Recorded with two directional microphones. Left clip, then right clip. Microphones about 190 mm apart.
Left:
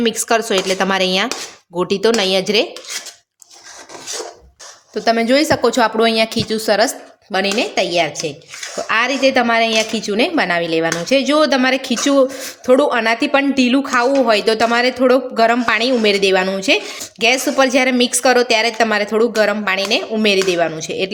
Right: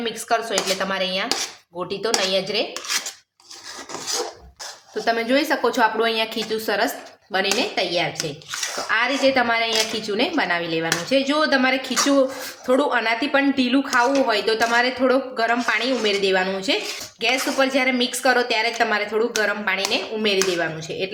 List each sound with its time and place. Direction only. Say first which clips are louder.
0.0 s speech: left 7 dB; 65° left (ahead or behind)
5.0 s speech: left 6 dB; 50° left (ahead or behind)